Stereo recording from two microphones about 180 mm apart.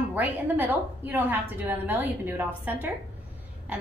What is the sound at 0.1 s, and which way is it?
A woman's voice, 10° right (ahead or behind).